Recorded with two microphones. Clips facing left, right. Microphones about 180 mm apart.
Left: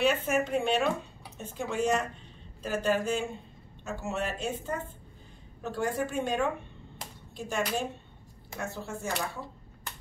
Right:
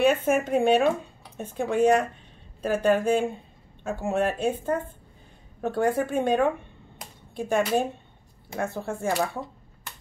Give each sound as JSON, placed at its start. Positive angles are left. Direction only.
{"t": 0.0, "sound": "speech", "side_deg": -50}